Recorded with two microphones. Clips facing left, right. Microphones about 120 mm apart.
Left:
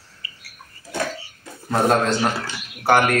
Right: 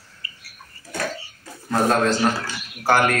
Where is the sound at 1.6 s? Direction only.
20° left (ahead or behind).